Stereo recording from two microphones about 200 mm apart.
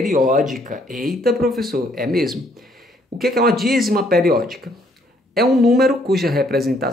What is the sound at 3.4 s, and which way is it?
Speech, centre (ahead or behind).